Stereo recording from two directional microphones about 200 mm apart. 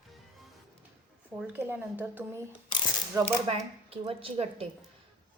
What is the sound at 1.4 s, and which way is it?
Speech, 10° right (ahead or behind).